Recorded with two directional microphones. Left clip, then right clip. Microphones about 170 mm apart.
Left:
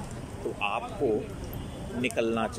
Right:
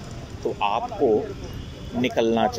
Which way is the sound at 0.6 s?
10° left (ahead or behind).